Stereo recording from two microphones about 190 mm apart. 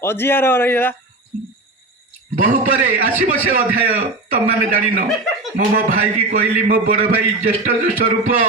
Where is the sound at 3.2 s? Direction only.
50° right (ahead or behind).